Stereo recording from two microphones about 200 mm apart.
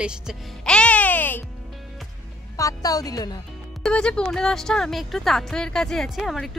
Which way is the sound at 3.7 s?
5° left (ahead or behind).